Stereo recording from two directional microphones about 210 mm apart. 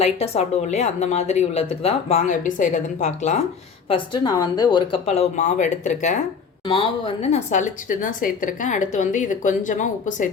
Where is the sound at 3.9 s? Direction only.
20° left (ahead or behind).